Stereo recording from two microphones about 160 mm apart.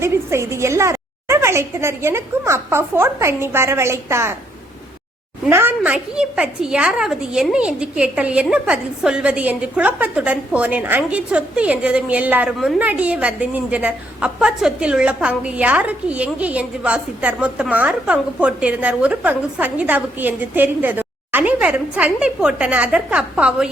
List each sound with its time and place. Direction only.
0.0 s a woman's voice: 15° right (ahead or behind)
5.5 s a woman's voice: 15° right (ahead or behind)